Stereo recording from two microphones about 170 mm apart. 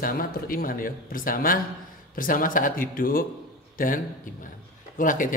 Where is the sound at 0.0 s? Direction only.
60° left (ahead or behind).